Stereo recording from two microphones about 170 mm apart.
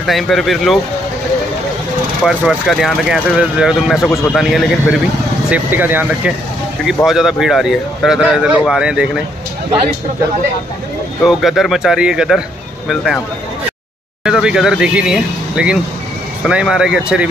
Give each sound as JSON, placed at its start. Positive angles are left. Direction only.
{"t": 0.0, "sound": "speech", "side_deg": 0}
{"t": 2.2, "sound": "speech", "side_deg": 0}
{"t": 4.0, "sound": "a man's voice", "side_deg": 15}
{"t": 4.4, "sound": "speech", "side_deg": 0}
{"t": 5.5, "sound": "speech", "side_deg": -10}
{"t": 11.2, "sound": "speech", "side_deg": 0}
{"t": 14.2, "sound": "speech", "side_deg": -5}